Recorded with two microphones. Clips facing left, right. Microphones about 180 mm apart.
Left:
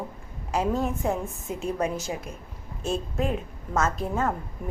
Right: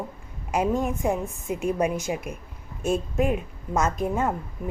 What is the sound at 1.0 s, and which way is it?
Speech, 10° right (ahead or behind).